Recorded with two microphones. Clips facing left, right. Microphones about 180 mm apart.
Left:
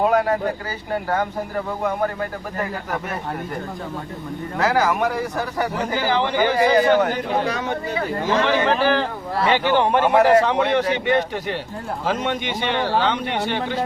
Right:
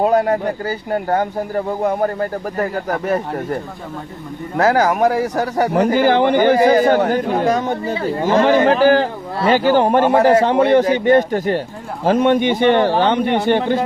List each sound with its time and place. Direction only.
0.0 s speech: 35° right (ahead or behind)
4.5 s a man's voice: 45° right (ahead or behind)
5.7 s a man's voice: 60° right (ahead or behind)